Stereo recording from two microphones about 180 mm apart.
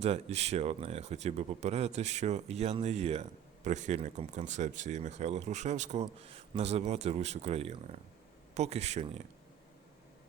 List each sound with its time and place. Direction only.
0.0 s speech: 35° right (ahead or behind)